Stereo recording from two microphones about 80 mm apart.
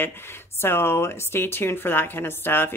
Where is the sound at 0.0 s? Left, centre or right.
Left.